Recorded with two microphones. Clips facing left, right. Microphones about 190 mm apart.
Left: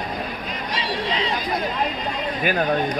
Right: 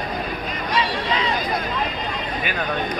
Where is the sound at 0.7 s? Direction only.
50° right (ahead or behind).